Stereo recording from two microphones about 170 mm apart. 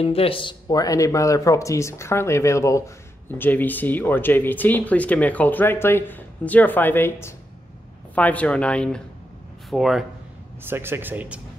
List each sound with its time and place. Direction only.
0.0 s speech: 35° left (ahead or behind); by 10.0 s centre (ahead or behind)
10.7 s speech: 15° right (ahead or behind)